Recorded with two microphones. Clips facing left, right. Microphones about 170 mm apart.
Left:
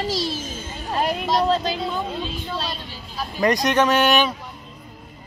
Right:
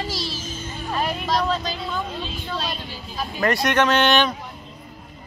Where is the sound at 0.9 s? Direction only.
25° left (ahead or behind).